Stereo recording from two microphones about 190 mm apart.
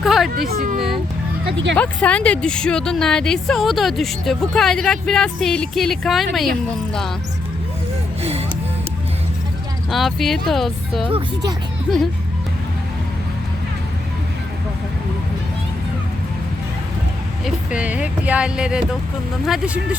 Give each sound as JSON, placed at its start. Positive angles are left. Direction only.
{"t": 0.0, "sound": "a sound", "side_deg": 0}
{"t": 0.3, "sound": "speech", "side_deg": -45}
{"t": 1.7, "sound": "a woman's voice", "side_deg": 5}
{"t": 8.2, "sound": "music", "side_deg": -35}
{"t": 9.9, "sound": "a woman's voice", "side_deg": 0}
{"t": 17.4, "sound": "a woman's voice", "side_deg": -5}